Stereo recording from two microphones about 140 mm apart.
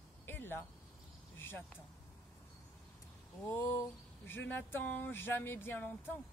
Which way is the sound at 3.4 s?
15° left (ahead or behind).